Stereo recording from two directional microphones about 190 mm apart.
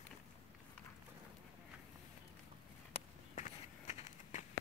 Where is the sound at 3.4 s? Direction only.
40° left (ahead or behind).